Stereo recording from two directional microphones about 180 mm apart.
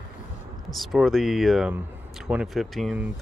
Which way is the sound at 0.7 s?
Centre (ahead or behind).